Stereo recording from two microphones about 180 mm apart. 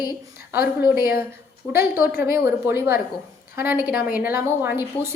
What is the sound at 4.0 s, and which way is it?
Speech, 55° left (ahead or behind).